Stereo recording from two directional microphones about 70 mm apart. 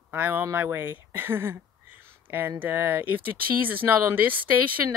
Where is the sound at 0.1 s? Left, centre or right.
Right.